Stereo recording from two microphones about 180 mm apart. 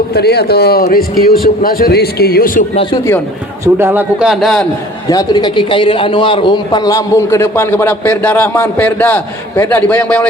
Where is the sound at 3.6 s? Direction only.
10° right (ahead or behind).